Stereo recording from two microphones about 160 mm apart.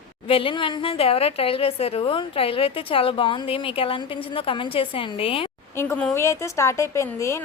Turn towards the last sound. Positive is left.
turn(degrees=20)  # may be behind; listen again after turning